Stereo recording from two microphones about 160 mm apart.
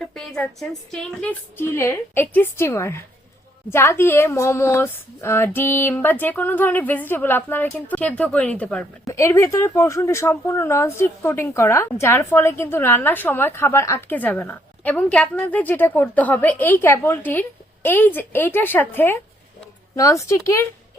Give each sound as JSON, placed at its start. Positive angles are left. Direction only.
{"t": 0.0, "sound": "speech", "side_deg": 5}
{"t": 9.0, "sound": "speech", "side_deg": 20}